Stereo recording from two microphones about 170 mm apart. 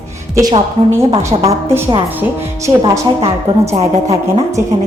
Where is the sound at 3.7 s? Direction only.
40° right (ahead or behind).